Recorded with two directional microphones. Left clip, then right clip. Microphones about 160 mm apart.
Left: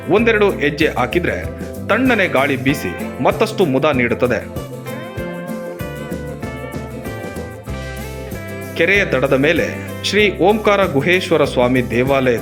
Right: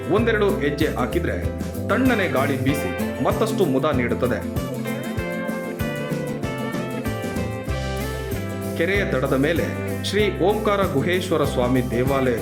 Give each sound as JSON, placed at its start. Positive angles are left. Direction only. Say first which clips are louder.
{"t": 0.1, "sound": "speech", "louder": "left 6 dB", "side_deg": 20}
{"t": 8.8, "sound": "speech", "louder": "left 8 dB", "side_deg": 20}